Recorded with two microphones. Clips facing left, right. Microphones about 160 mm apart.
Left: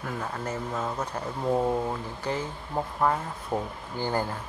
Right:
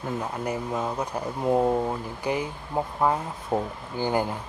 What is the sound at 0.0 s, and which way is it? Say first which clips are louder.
Speech: right 3 dB; 15° right (ahead or behind).